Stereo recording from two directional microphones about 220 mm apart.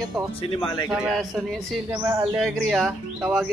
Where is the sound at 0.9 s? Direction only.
Centre (ahead or behind).